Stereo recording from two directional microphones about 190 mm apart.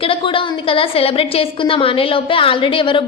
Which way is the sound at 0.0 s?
30° left (ahead or behind).